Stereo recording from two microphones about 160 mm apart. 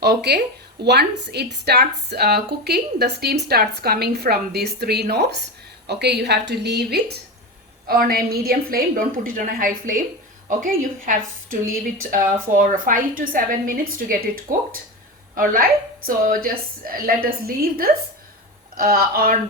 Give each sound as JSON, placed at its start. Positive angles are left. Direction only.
{"t": 0.0, "sound": "a woman's voice", "side_deg": -90}
{"t": 7.9, "sound": "a woman's voice", "side_deg": -70}
{"t": 16.0, "sound": "a woman's voice", "side_deg": -60}